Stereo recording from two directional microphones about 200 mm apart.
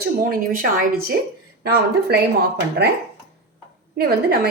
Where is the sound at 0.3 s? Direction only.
45° right (ahead or behind).